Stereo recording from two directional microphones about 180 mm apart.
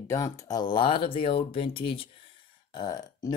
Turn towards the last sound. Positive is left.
turn(degrees=20)  # may be behind; listen again after turning